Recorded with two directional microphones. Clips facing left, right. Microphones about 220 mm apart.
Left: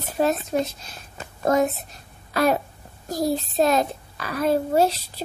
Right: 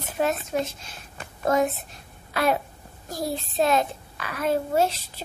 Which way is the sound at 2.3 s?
40° left (ahead or behind).